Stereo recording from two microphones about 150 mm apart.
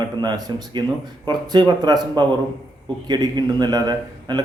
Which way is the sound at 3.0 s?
30° right (ahead or behind).